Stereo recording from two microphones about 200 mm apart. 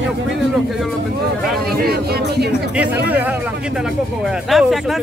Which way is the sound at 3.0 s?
10° right (ahead or behind).